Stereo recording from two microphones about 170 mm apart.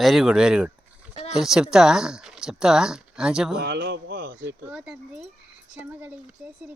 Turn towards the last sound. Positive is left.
turn(degrees=-10)  # may be behind; listen again after turning